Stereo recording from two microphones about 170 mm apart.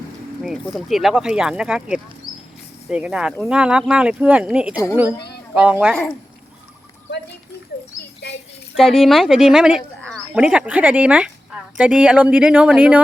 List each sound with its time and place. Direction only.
0.4 s speech: centre (ahead or behind)
5.8 s speech: centre (ahead or behind)
8.2 s a sound: 80° left
8.7 s speech: centre (ahead or behind)